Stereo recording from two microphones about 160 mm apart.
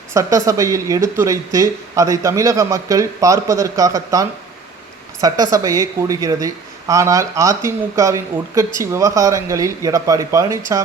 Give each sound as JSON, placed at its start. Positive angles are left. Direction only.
{"t": 0.1, "sound": "speech", "side_deg": -20}